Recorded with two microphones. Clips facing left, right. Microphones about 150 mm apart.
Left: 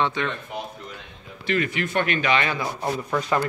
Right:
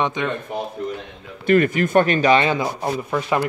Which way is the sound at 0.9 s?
50° right (ahead or behind).